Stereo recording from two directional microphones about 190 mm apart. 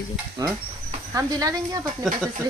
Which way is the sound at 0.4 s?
20° right (ahead or behind).